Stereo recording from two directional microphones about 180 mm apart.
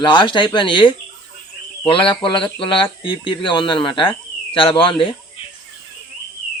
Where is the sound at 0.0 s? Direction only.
25° left (ahead or behind).